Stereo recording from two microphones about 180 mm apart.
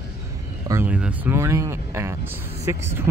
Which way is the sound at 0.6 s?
10° right (ahead or behind).